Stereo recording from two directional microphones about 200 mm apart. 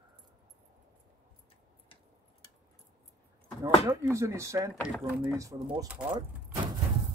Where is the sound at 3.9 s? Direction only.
15° right (ahead or behind).